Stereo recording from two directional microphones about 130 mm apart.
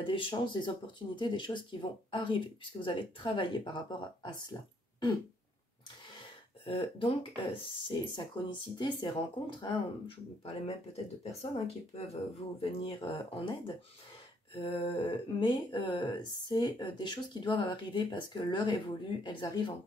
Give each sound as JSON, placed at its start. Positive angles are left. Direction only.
{"t": 0.0, "sound": "speech", "side_deg": 40}
{"t": 6.6, "sound": "speech", "side_deg": 45}